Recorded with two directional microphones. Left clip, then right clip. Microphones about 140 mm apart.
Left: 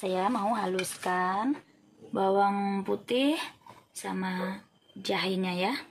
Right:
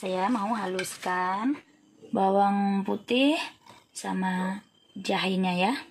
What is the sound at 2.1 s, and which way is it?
Mantra, 45° right (ahead or behind).